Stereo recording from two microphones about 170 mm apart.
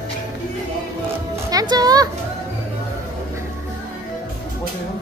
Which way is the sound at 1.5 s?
20° right (ahead or behind).